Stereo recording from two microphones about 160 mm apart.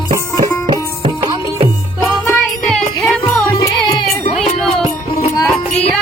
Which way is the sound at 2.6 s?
Centre (ahead or behind).